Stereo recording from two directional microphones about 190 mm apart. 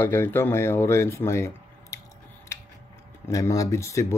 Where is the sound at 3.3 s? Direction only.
15° left (ahead or behind).